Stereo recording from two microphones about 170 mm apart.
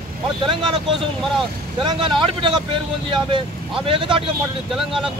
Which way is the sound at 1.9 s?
30° right (ahead or behind).